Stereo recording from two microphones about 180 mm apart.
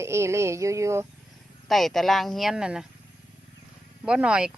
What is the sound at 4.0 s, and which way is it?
Speech, 5° right (ahead or behind).